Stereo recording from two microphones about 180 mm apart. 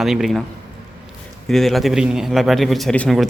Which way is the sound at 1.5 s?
Centre (ahead or behind).